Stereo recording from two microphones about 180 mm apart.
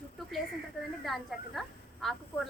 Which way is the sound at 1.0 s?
Centre (ahead or behind).